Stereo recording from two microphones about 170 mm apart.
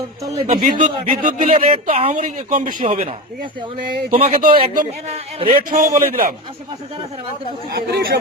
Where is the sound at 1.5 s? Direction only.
35° right (ahead or behind).